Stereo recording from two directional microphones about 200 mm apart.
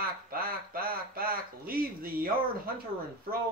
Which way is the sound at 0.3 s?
45° right (ahead or behind).